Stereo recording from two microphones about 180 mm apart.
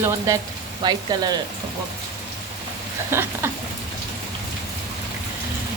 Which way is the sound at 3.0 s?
15° right (ahead or behind).